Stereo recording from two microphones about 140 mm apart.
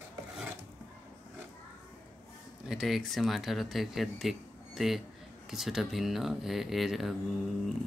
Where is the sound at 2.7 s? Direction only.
Centre (ahead or behind).